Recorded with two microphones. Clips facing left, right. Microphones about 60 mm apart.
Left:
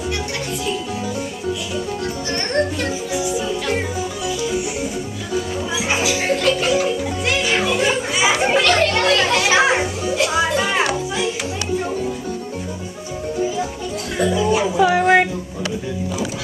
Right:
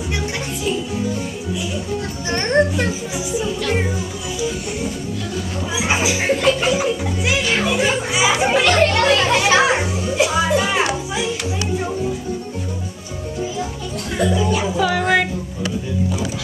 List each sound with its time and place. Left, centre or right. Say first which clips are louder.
2.3 s music: right 5 dB; right
5.8 s music: right 2 dB; centre
7.4 s music: left 1 dB; centre
8.5 s music: right 2 dB; centre
9.0 s children playing: right 1 dB; centre
9.5 s children playing: even; centre
10.5 s music: right 1 dB; centre
14.1 s music: even; centre
14.8 s a sound: left 4 dB; centre